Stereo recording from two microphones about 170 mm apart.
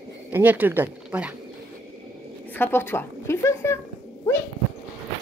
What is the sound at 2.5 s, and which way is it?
A woman's voice, 10° left (ahead or behind).